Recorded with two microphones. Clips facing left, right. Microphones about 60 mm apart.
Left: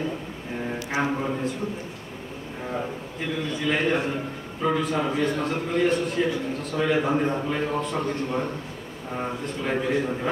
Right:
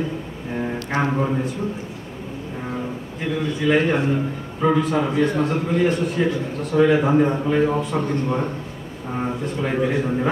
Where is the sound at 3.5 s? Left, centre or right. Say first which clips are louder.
Right 8 dB; centre.